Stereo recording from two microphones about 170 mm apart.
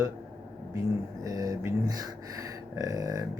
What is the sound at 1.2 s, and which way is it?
Speech, 20° right (ahead or behind).